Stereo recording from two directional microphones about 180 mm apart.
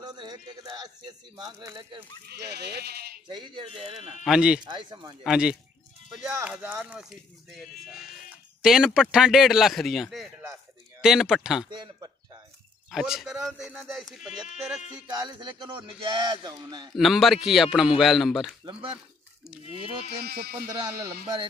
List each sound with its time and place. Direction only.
0.0 s speech: 25° right (ahead or behind)
2.2 s speech: 65° right (ahead or behind)
3.3 s speech: 25° right (ahead or behind)
4.2 s speech: 5° right (ahead or behind)
4.6 s speech: 25° right (ahead or behind)
5.2 s speech: 5° right (ahead or behind)
11.7 s a sound: 25° right (ahead or behind)
12.9 s speech: centre (ahead or behind)
15.0 s speech: 25° right (ahead or behind)
16.9 s speech: centre (ahead or behind)
18.7 s speech: 30° right (ahead or behind)
20.2 s speech: 65° right (ahead or behind)
20.8 s speech: 20° right (ahead or behind)